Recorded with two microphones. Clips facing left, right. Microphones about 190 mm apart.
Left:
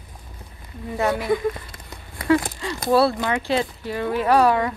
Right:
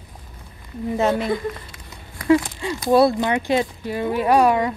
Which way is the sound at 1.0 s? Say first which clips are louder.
Right 2 dB; 20° right (ahead or behind).